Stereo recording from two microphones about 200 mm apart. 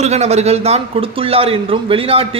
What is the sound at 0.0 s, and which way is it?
A man's voice, 35° right (ahead or behind).